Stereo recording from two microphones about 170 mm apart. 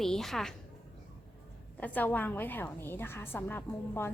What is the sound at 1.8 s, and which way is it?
A woman's voice, 10° left (ahead or behind).